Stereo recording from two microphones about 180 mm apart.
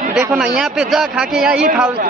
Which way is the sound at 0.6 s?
5° right (ahead or behind).